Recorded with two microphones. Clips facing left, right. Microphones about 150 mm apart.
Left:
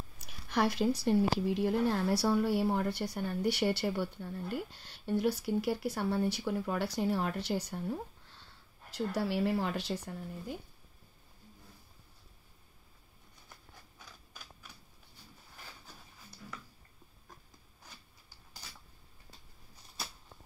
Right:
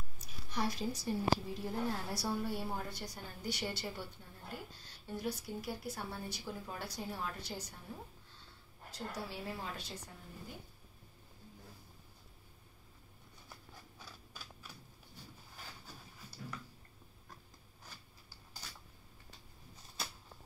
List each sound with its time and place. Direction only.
0.3 s a woman's voice: 70° left (ahead or behind)